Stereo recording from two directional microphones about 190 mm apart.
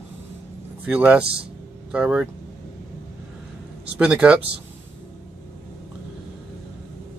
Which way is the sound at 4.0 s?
5° right (ahead or behind).